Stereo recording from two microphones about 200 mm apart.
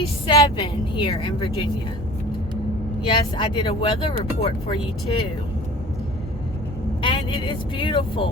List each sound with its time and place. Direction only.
0.3 s speech: 25° left (ahead or behind)
3.0 s speech: 25° left (ahead or behind)
7.0 s speech: 25° left (ahead or behind)